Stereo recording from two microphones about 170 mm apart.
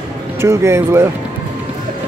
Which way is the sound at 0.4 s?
15° right (ahead or behind).